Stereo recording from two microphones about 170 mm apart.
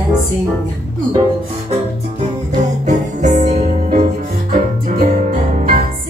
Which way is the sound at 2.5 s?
45° right (ahead or behind).